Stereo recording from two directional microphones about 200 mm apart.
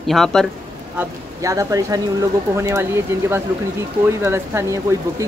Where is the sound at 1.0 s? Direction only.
15° right (ahead or behind).